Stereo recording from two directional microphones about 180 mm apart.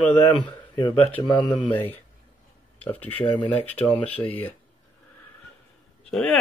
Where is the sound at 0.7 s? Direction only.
30° left (ahead or behind).